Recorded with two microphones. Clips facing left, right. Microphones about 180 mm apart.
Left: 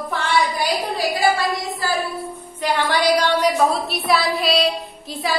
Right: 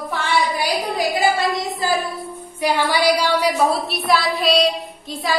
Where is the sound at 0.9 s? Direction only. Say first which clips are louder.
Right 1 dB; 20° right (ahead or behind).